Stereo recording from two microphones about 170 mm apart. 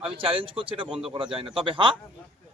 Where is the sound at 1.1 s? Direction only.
30° right (ahead or behind).